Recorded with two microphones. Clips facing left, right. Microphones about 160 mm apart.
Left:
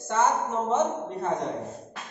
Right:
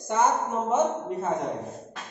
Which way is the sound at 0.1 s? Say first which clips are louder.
Even; 15° right (ahead or behind).